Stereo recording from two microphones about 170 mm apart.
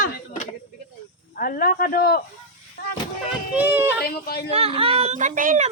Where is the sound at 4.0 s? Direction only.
65° left (ahead or behind).